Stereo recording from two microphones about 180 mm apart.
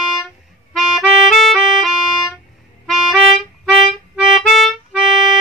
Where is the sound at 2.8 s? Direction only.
Centre (ahead or behind).